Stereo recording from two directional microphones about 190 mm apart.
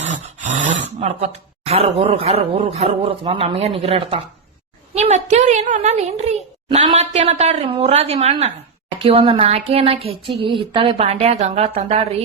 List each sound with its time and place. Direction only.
0.0 s a woman's voice: 40° right (ahead or behind)